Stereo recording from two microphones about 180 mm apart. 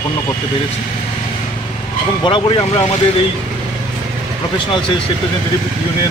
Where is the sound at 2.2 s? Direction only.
30° left (ahead or behind).